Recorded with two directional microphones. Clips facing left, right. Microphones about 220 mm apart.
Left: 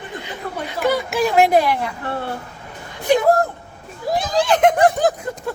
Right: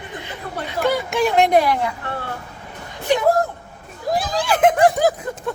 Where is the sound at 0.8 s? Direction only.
5° left (ahead or behind).